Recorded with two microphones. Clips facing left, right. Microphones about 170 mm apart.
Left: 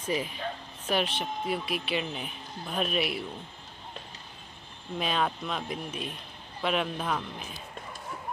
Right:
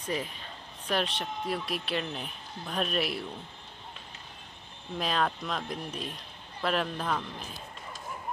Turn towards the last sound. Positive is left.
turn(degrees=5)  # may be behind; listen again after turning